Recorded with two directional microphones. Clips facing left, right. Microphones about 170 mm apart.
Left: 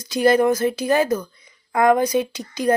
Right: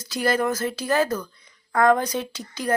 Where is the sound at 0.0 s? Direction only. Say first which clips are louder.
Left 7 dB; 20° left (ahead or behind).